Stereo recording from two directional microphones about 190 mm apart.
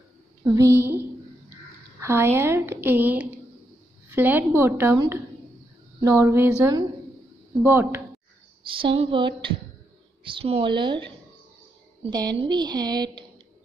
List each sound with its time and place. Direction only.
0.4 s a woman's voice: 15° right (ahead or behind)
8.6 s a woman's voice: 25° right (ahead or behind)
12.0 s a woman's voice: 20° right (ahead or behind)